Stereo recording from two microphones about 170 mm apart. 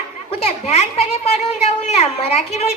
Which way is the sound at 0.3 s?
40° left (ahead or behind).